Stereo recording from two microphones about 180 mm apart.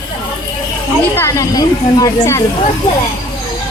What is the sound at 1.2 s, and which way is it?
Speech, 15° left (ahead or behind).